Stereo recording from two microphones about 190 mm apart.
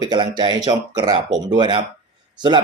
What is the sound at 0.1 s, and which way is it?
Speech, 20° right (ahead or behind).